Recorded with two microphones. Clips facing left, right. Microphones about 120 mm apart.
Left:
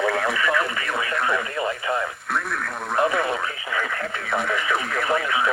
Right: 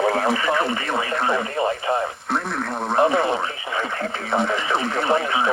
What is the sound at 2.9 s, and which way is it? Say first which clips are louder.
Radio: right 3 dB; 30° right (ahead or behind).